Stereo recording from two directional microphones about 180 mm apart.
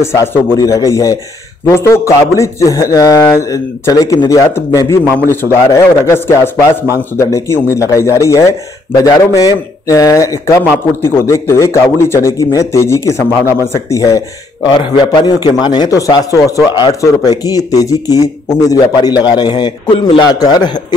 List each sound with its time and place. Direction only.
0.0 s a man's voice: 15° left (ahead or behind)